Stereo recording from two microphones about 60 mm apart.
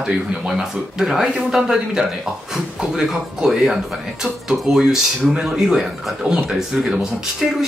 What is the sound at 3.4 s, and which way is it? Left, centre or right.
A man's voice, centre.